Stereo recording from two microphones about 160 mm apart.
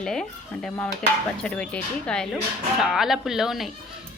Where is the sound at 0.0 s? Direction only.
5° left (ahead or behind).